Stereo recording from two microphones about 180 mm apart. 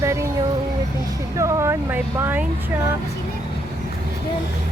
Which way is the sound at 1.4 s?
15° right (ahead or behind).